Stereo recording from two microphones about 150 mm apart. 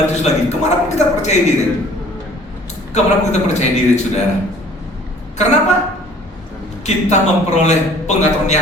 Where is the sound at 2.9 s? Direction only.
50° left (ahead or behind).